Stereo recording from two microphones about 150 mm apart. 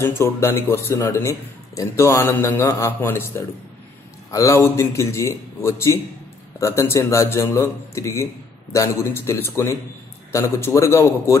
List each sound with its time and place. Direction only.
0.0 s a man's voice: 15° left (ahead or behind)